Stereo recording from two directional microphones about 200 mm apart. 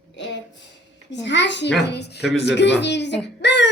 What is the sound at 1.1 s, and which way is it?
Speech, 60° left (ahead or behind).